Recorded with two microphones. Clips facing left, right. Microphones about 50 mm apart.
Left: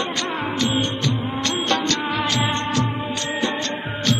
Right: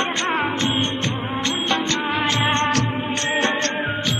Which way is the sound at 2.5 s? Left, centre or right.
Right.